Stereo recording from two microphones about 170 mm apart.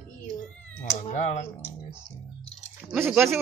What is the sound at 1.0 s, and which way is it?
Speech, 45° left (ahead or behind).